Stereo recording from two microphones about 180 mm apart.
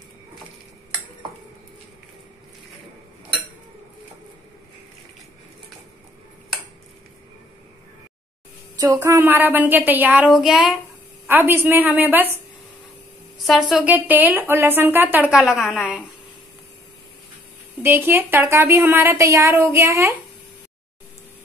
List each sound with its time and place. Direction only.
8.7 s speech: 20° right (ahead or behind)
13.5 s speech: 5° right (ahead or behind)
17.8 s speech: 15° right (ahead or behind)